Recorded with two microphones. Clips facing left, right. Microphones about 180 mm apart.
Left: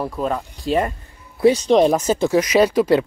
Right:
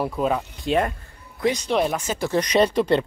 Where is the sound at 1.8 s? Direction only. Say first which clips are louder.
Left 8 dB; 35° left (ahead or behind).